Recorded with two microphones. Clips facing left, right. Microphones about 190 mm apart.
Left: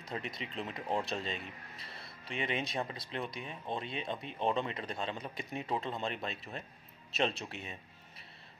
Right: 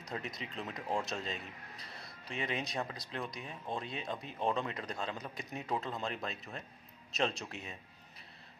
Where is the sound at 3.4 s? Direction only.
Centre (ahead or behind).